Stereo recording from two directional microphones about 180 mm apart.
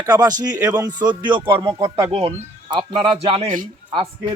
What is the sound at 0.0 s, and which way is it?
Speech, 25° right (ahead or behind).